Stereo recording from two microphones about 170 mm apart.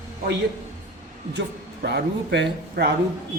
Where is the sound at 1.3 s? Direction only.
80° right.